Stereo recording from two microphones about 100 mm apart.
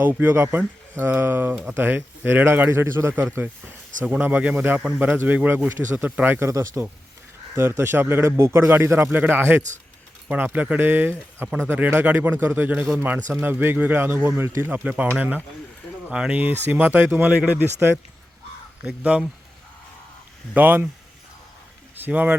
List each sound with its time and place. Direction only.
0.0 s speech: 20° right (ahead or behind)
6.5 s speech: 30° right (ahead or behind); by 19.3 s 10° right (ahead or behind)
20.5 s speech: 20° right (ahead or behind)
21.9 s speech: 20° right (ahead or behind)